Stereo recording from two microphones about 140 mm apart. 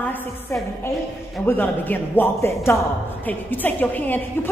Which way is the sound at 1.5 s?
15° left (ahead or behind).